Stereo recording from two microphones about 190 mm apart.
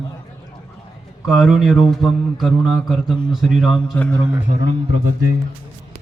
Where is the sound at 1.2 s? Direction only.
Centre (ahead or behind).